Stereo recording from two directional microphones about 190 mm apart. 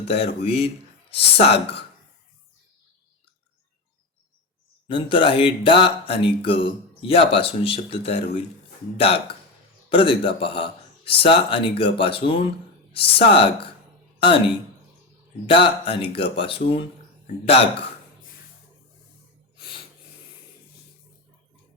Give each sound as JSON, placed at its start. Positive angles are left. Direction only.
{"t": 0.0, "sound": "speech", "side_deg": 30}
{"t": 4.9, "sound": "speech", "side_deg": 25}
{"t": 19.5, "sound": "snort", "side_deg": 25}